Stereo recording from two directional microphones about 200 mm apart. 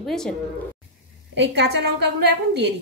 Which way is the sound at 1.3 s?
60° right (ahead or behind).